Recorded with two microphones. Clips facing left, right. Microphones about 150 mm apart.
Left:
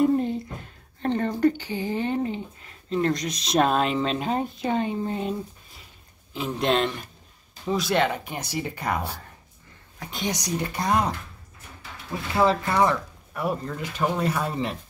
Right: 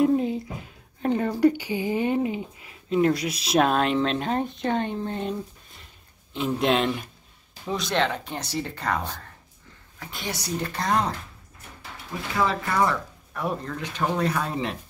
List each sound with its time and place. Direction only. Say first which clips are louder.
0.0 s a woman's voice: even; centre (ahead or behind)
12.4 s speech: left 3 dB; 30° left (ahead or behind)
12.8 s speech: left 2 dB; 10° left (ahead or behind)